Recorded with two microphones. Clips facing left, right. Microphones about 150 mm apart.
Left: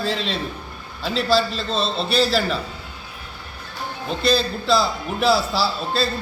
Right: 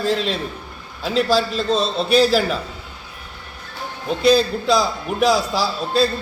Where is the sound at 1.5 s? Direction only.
45° right (ahead or behind).